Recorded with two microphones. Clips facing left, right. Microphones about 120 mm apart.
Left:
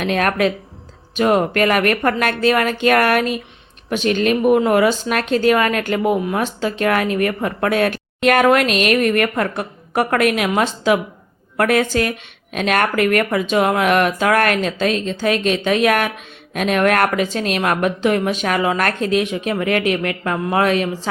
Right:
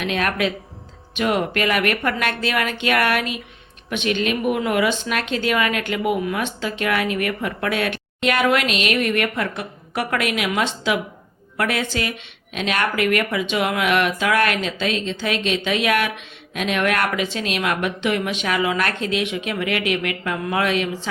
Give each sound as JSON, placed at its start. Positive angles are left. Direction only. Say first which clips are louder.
{"t": 0.0, "sound": "a woman's voice", "louder": "left 5 dB", "side_deg": 45}